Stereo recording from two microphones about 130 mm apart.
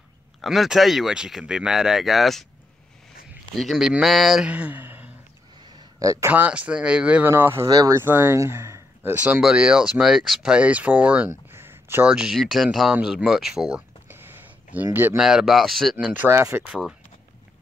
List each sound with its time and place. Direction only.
0.4 s speech: centre (ahead or behind)
3.5 s speech: centre (ahead or behind)
5.8 s speech: 25° right (ahead or behind)
7.7 s speech: 30° right (ahead or behind)
8.0 s speech: 20° right (ahead or behind)
11.2 s a sound: 20° right (ahead or behind)
12.1 s speech: 5° right (ahead or behind)
14.1 s a sound: 15° right (ahead or behind)
15.2 s speech: 5° right (ahead or behind)
16.1 s speech: 20° right (ahead or behind)